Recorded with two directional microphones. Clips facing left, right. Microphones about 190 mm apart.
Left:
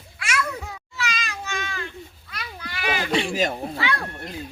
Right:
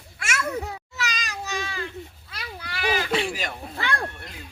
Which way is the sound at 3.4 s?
45° left (ahead or behind).